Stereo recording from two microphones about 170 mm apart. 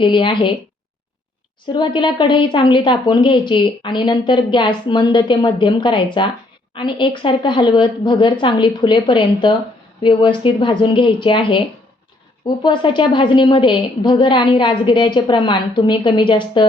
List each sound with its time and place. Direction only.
0.0 s speech: 30° left (ahead or behind)
1.7 s speech: 30° left (ahead or behind)
12.6 s speech: 30° left (ahead or behind)